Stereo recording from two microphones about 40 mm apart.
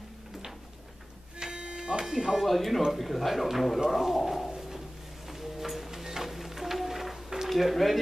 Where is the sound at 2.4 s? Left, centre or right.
Centre.